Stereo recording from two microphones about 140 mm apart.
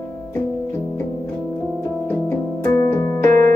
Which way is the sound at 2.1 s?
20° left (ahead or behind).